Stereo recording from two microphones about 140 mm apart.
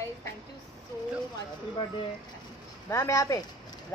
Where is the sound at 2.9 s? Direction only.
20° left (ahead or behind).